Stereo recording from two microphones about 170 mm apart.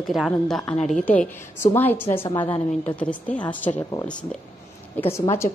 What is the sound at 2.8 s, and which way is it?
Speech, 10° left (ahead or behind).